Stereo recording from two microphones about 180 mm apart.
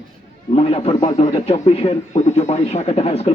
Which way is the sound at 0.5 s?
30° left (ahead or behind).